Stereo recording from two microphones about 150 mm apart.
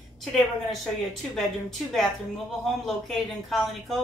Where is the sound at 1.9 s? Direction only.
Centre (ahead or behind).